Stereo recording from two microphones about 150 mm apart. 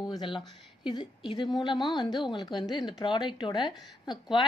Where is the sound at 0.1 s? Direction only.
30° left (ahead or behind).